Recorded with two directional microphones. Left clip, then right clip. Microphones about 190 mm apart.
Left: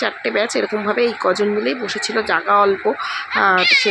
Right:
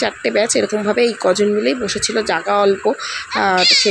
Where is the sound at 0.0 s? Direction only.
25° right (ahead or behind).